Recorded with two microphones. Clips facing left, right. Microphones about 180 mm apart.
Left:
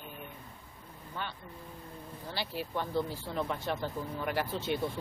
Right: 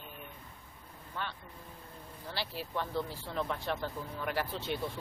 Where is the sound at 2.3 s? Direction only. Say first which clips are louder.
Left 2 dB; centre (ahead or behind).